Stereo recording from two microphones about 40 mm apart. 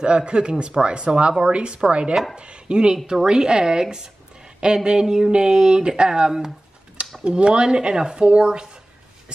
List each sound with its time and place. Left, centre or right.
0.0 s a woman's voice: right